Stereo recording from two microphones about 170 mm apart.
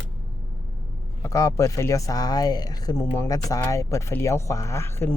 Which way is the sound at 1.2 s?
20° left (ahead or behind).